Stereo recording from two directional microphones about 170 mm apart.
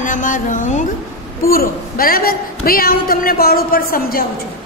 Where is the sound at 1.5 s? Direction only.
60° left (ahead or behind).